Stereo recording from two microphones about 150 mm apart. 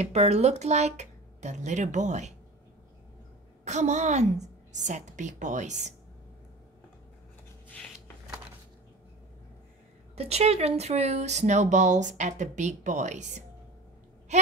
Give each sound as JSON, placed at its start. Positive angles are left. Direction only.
{"t": 0.0, "sound": "speech", "side_deg": -45}
{"t": 3.6, "sound": "speech", "side_deg": -50}
{"t": 10.1, "sound": "speech", "side_deg": -45}